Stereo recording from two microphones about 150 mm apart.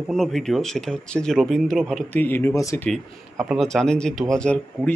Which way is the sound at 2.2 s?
15° left (ahead or behind).